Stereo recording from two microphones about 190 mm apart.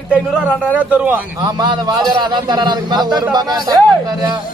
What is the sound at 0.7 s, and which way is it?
Speech, 10° right (ahead or behind).